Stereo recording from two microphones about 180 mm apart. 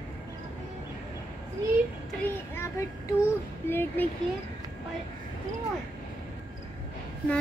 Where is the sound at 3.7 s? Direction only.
10° left (ahead or behind).